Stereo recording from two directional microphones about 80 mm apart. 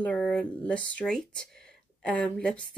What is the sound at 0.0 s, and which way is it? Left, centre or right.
Speech, centre.